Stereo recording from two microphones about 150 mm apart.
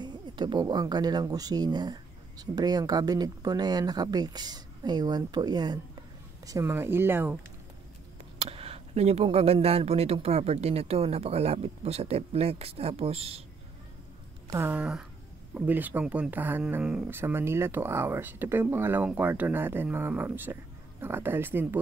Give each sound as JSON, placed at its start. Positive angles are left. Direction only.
{"t": 0.0, "sound": "speech", "side_deg": -30}
{"t": 8.4, "sound": "speech", "side_deg": -40}
{"t": 14.5, "sound": "speech", "side_deg": -15}